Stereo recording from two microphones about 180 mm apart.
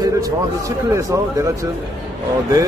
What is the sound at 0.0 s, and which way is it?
A man's voice, 20° right (ahead or behind).